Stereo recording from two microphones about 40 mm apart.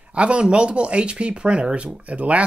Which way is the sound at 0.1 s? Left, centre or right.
Right.